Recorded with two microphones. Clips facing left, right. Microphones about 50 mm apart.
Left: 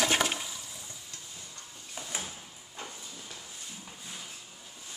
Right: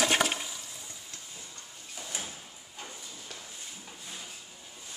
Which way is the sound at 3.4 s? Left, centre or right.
Centre.